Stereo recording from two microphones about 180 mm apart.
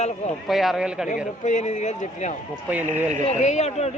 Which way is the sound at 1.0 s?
45° left (ahead or behind).